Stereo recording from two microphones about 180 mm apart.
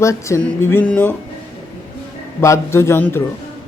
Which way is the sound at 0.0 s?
15° left (ahead or behind).